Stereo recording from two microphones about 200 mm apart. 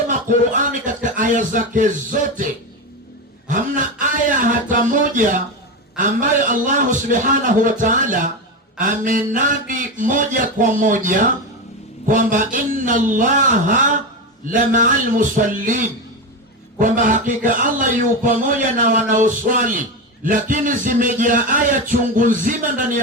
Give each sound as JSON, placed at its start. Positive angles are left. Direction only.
{"t": 0.1, "sound": "a man's voice", "side_deg": -40}
{"t": 3.5, "sound": "a sound", "side_deg": -40}
{"t": 6.0, "sound": "a man's voice", "side_deg": -40}